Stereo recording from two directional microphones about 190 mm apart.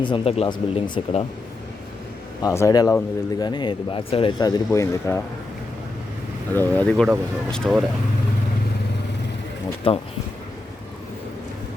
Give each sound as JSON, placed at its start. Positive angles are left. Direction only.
{"t": 0.0, "sound": "speech", "side_deg": 30}
{"t": 2.4, "sound": "speech", "side_deg": 15}
{"t": 6.5, "sound": "speech", "side_deg": 10}
{"t": 9.9, "sound": "speech", "side_deg": 30}